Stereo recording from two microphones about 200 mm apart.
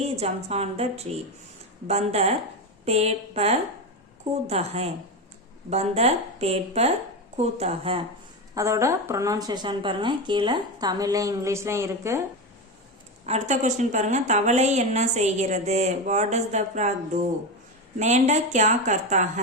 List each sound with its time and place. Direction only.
0.0 s a woman's voice: 30° right (ahead or behind)
8.5 s a woman's voice: 15° right (ahead or behind)
13.2 s a woman's voice: 35° right (ahead or behind)